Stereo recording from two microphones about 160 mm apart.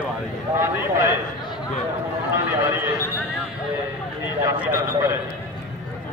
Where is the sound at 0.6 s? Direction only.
15° right (ahead or behind).